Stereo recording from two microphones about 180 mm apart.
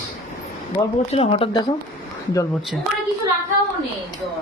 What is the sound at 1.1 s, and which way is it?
Speech, 30° left (ahead or behind).